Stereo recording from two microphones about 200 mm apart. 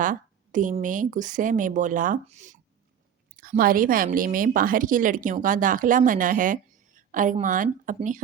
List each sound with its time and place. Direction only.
0.0 s speech: 40° right (ahead or behind)
3.6 s speech: 45° right (ahead or behind)